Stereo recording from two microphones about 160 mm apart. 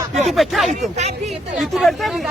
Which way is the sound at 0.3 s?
Centre (ahead or behind).